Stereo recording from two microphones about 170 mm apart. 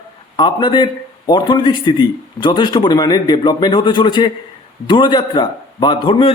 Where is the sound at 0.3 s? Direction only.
25° left (ahead or behind).